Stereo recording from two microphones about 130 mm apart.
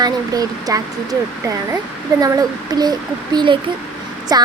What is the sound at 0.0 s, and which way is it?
Speech, 30° right (ahead or behind).